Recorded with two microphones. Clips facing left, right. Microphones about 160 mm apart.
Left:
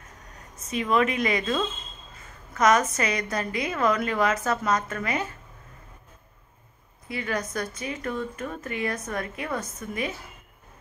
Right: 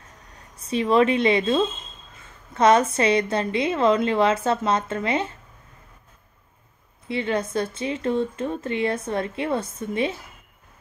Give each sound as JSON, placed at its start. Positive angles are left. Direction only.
{"t": 0.6, "sound": "speech", "side_deg": -30}
{"t": 7.1, "sound": "speech", "side_deg": -25}